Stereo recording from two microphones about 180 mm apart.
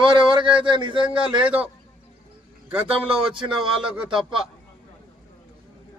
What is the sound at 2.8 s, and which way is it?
Speech, 30° right (ahead or behind).